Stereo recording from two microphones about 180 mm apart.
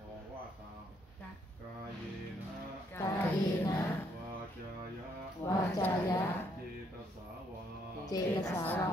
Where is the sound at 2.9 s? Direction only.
10° left (ahead or behind).